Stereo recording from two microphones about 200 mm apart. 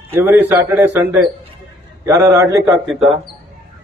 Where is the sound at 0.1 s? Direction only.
10° right (ahead or behind).